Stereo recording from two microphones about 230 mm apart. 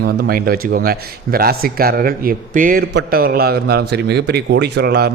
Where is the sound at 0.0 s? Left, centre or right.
Right.